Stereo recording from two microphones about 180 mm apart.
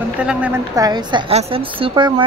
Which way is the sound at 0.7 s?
20° right (ahead or behind).